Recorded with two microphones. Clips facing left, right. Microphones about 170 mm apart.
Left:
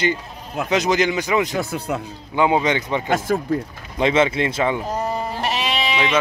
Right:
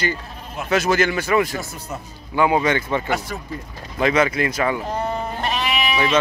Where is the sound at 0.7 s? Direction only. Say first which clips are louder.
Even; 15° left (ahead or behind).